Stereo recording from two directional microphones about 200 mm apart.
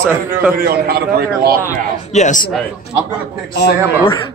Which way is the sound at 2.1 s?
40° left (ahead or behind).